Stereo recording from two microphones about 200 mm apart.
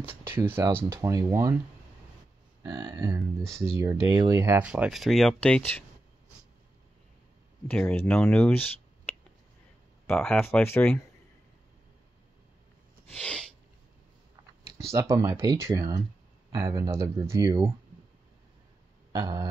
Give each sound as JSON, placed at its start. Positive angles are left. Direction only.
{"t": 0.3, "sound": "speech", "side_deg": -10}
{"t": 2.6, "sound": "speech", "side_deg": -20}
{"t": 3.3, "sound": "speech", "side_deg": 0}
{"t": 3.8, "sound": "speech", "side_deg": -15}
{"t": 7.7, "sound": "speech", "side_deg": 10}
{"t": 14.9, "sound": "speech", "side_deg": -15}
{"t": 19.1, "sound": "a sound", "side_deg": -20}